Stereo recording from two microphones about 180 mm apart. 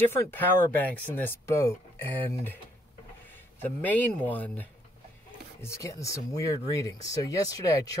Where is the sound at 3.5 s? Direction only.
10° left (ahead or behind).